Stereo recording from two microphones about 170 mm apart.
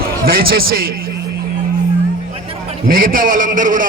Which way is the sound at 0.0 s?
60° right (ahead or behind).